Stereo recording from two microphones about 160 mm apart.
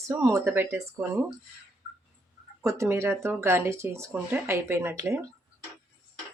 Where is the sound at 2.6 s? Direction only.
15° right (ahead or behind).